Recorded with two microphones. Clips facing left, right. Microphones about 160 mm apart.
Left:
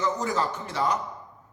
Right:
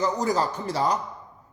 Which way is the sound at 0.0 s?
35° right (ahead or behind).